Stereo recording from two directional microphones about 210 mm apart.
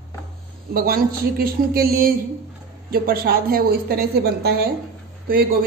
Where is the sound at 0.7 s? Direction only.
45° right (ahead or behind).